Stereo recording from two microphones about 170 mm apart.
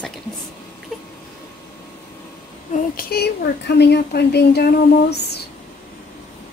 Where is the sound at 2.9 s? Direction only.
70° left (ahead or behind).